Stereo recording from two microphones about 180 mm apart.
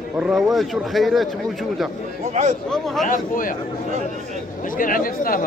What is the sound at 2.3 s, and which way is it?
Speech, 40° right (ahead or behind).